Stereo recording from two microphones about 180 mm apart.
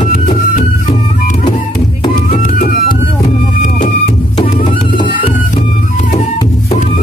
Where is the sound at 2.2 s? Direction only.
40° left (ahead or behind).